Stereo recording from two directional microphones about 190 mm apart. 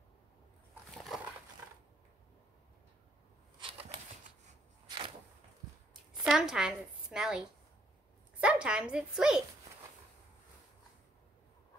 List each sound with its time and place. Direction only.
0.9 s crushing: centre (ahead or behind)
4.8 s a sound: 25° right (ahead or behind)
6.2 s a woman's voice: centre (ahead or behind)